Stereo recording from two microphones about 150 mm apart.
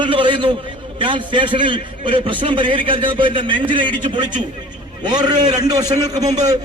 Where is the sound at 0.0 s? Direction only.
35° right (ahead or behind).